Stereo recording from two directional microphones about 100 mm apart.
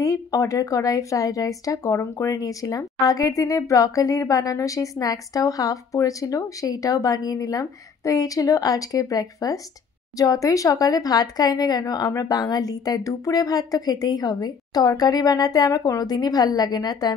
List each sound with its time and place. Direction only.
0.0 s speech: 35° left (ahead or behind)